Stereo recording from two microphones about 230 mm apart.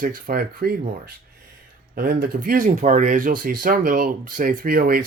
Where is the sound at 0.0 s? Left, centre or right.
Right.